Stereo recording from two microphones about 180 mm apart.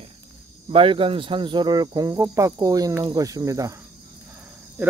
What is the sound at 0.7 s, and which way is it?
Speech, 30° right (ahead or behind).